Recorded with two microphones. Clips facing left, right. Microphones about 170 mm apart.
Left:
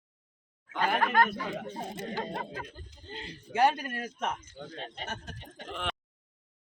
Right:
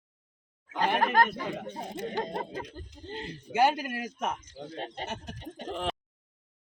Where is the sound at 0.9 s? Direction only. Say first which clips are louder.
Right 1 dB; 40° right (ahead or behind).